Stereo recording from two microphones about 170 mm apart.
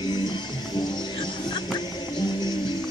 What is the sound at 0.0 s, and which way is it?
Music, 25° left (ahead or behind).